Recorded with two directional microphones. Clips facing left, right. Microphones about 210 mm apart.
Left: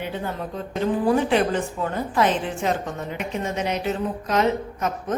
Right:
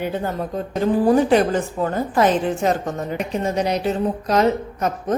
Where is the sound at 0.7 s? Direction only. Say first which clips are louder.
Right 4 dB; 40° right (ahead or behind).